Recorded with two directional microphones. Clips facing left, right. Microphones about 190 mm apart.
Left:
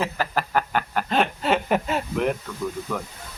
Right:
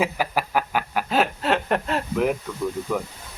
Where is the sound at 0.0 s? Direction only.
10° right (ahead or behind).